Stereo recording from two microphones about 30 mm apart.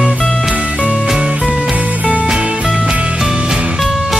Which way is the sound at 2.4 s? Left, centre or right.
Right.